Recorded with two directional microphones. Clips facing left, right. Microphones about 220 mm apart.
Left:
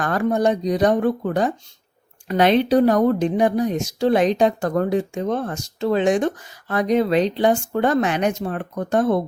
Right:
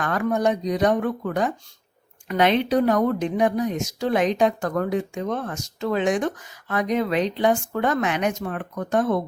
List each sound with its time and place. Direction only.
0.0 s a woman's voice: 35° left (ahead or behind)